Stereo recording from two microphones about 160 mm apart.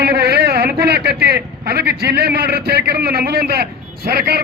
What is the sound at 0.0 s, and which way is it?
A man's voice, 90° right.